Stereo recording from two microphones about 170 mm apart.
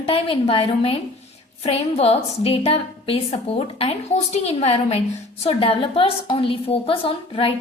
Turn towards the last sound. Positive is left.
turn(degrees=30)  # may be behind; listen again after turning